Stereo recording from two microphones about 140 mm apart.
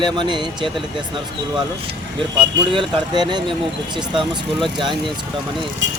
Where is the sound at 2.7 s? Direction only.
35° right (ahead or behind).